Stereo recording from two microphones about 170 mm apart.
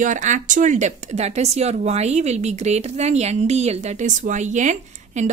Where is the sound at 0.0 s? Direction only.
45° right (ahead or behind).